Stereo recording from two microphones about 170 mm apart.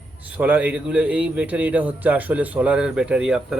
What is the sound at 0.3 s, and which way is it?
A man's voice, 10° right (ahead or behind).